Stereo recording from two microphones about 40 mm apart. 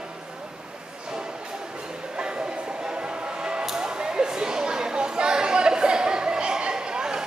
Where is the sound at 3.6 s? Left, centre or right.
Centre.